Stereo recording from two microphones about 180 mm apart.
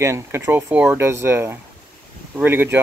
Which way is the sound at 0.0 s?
15° right (ahead or behind).